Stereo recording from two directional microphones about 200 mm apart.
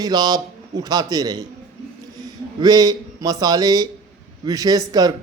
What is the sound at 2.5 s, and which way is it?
A man's voice, 20° right (ahead or behind).